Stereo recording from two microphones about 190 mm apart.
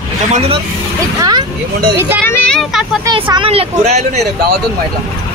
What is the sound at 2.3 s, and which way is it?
Speech, 5° left (ahead or behind).